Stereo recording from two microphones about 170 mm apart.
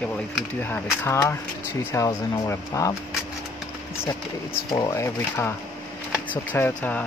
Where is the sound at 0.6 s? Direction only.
15° left (ahead or behind).